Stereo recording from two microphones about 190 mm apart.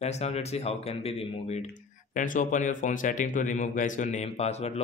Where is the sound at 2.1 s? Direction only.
45° left (ahead or behind).